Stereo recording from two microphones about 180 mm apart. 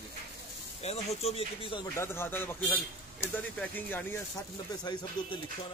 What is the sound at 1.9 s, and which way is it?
Speech, 15° left (ahead or behind).